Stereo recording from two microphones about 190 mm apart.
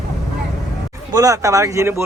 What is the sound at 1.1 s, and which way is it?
Speech, 15° right (ahead or behind).